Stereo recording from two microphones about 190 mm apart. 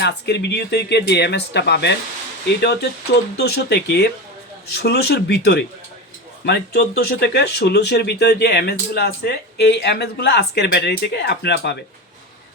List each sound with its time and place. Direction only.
0.0 s speech: 65° left (ahead or behind)